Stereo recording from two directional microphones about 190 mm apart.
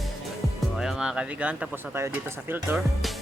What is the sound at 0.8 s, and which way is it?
Speech, centre (ahead or behind).